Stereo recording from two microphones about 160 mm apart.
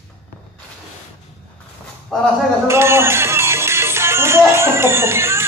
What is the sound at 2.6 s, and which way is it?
Music, 15° right (ahead or behind).